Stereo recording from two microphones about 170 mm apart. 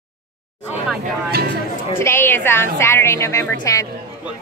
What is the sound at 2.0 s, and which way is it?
Speech, 15° left (ahead or behind).